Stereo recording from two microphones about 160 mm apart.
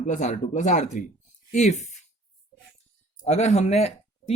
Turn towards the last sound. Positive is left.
turn(degrees=40)  # may be behind; listen again after turning